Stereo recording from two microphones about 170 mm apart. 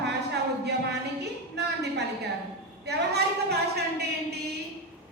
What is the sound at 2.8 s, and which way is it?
A woman's voice, 75° right (ahead or behind).